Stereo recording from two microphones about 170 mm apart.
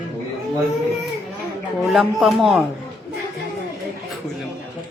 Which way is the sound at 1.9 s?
Centre (ahead or behind).